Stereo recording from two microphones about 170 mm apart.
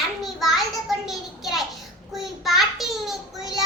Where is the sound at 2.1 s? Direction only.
Centre (ahead or behind).